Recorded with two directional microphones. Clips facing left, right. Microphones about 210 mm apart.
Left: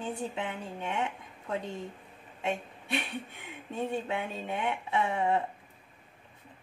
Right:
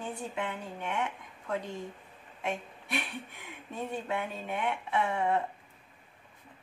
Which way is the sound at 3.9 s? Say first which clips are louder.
Left 1 dB; 25° left (ahead or behind).